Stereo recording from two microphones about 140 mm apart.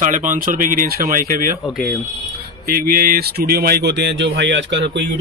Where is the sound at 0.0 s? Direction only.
65° right (ahead or behind).